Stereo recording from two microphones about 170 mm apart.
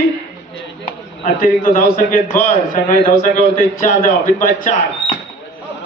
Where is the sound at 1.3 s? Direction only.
55° left (ahead or behind).